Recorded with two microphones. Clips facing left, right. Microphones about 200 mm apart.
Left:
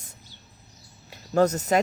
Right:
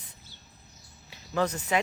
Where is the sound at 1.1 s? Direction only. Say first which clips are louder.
Left 7 dB; 45° left (ahead or behind).